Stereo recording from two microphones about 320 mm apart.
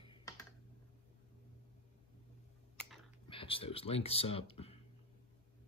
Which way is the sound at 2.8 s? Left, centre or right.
Centre.